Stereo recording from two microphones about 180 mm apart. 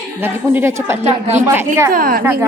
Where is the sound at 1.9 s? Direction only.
50° right (ahead or behind).